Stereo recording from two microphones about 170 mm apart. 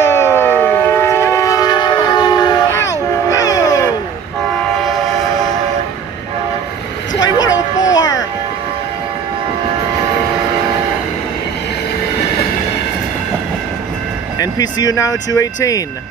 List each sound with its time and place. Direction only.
0.1 s siren: 15° left (ahead or behind)
2.9 s a sound: 20° left (ahead or behind)
7.2 s vehicle: 20° left (ahead or behind)
7.8 s music: 20° left (ahead or behind)
14.4 s speech: 20° left (ahead or behind)